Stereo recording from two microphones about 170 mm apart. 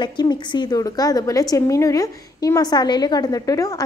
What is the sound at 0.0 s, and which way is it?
A woman's voice, 25° left (ahead or behind).